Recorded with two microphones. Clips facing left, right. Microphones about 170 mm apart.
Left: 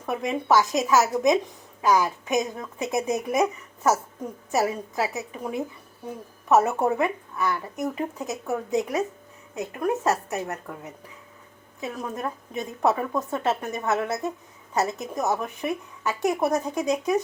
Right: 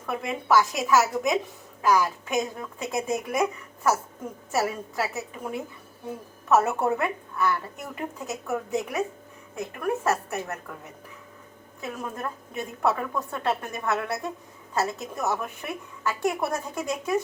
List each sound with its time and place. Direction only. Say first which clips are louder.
0.0 s a woman's voice: left 3 dB; 20° left (ahead or behind)
4.5 s speech: left 2 dB; 15° left (ahead or behind)
6.7 s a woman's voice: left 2 dB; 15° left (ahead or behind)
11.8 s a woman's voice: left 2 dB; 20° left (ahead or behind)